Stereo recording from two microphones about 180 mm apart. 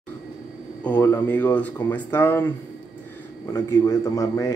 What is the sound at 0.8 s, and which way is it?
Speech, 10° left (ahead or behind).